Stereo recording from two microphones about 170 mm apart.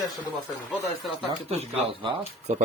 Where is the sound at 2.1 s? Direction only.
25° right (ahead or behind).